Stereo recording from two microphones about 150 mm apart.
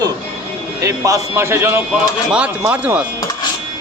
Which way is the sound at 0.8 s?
20° right (ahead or behind).